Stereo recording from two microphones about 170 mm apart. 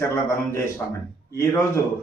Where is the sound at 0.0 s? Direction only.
15° left (ahead or behind).